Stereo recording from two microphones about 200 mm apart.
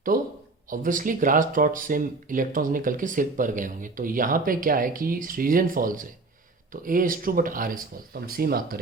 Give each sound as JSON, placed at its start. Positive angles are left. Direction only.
{"t": 0.1, "sound": "speech", "side_deg": -45}